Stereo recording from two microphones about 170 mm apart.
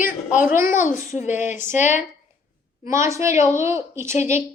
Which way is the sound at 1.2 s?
45° left (ahead or behind).